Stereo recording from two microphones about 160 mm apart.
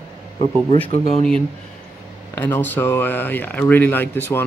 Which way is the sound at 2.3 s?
15° left (ahead or behind).